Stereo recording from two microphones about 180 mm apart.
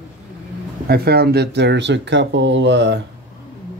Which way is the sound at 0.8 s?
60° right (ahead or behind).